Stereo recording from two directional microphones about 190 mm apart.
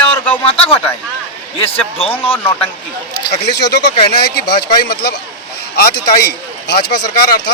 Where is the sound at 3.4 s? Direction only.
60° left (ahead or behind).